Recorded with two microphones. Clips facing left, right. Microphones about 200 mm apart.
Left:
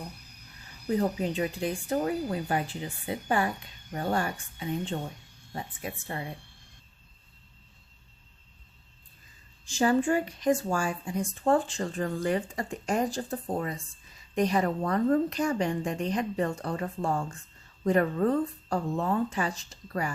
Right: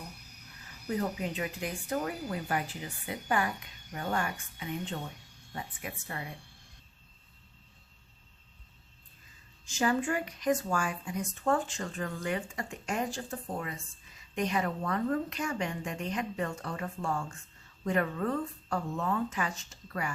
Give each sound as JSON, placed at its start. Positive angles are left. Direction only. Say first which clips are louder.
{"t": 0.9, "sound": "speech", "louder": "left 5 dB", "side_deg": 30}
{"t": 9.6, "sound": "speech", "louder": "left 5 dB", "side_deg": 30}